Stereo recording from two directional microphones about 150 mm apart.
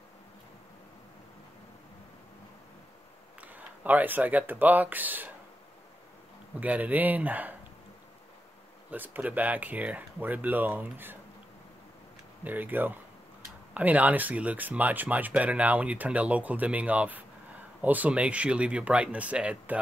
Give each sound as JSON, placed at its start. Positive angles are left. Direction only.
{"t": 3.3, "sound": "speech", "side_deg": -10}
{"t": 6.6, "sound": "speech", "side_deg": -10}
{"t": 8.9, "sound": "speech", "side_deg": -10}
{"t": 12.4, "sound": "speech", "side_deg": -10}